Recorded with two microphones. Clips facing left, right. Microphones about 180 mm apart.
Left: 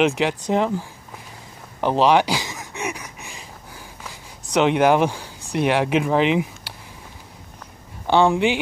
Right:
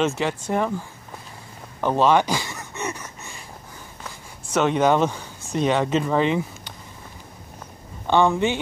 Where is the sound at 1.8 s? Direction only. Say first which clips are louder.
Left 1 dB; 15° left (ahead or behind).